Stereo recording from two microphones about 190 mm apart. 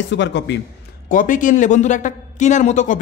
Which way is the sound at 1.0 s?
45° left (ahead or behind).